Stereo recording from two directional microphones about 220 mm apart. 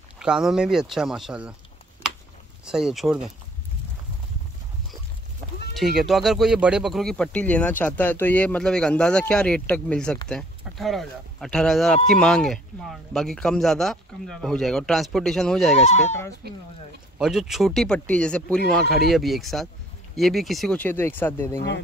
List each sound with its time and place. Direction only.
0.2 s speech: 5° right (ahead or behind)
2.6 s speech: centre (ahead or behind)
5.8 s speech: centre (ahead or behind)
16.4 s speech: 45° right (ahead or behind)
17.2 s speech: centre (ahead or behind)
21.5 s speech: 50° left (ahead or behind)